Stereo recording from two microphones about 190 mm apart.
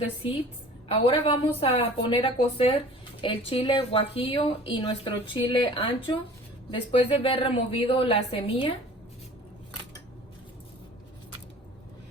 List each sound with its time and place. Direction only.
0.0 s a woman's voice: 30° left (ahead or behind)